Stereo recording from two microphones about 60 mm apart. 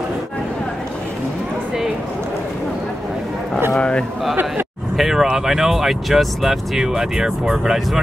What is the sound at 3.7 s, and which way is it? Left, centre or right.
Speech, centre.